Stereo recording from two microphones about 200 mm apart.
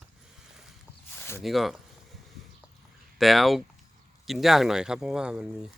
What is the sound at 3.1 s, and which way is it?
Speech, centre (ahead or behind).